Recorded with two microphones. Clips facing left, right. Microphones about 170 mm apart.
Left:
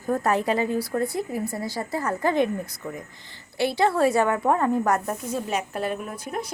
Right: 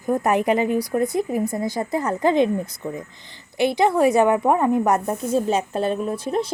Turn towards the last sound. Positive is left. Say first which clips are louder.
# right 8 dB
turn(degrees=-25)  # may be behind; listen again after turning